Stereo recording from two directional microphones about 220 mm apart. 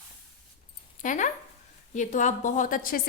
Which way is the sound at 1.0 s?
35° left (ahead or behind).